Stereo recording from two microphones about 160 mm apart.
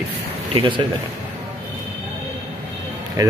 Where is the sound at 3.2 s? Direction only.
25° right (ahead or behind).